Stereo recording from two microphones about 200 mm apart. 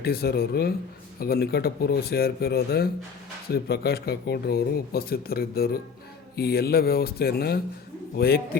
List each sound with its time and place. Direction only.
0.0 s speech: 50° left (ahead or behind)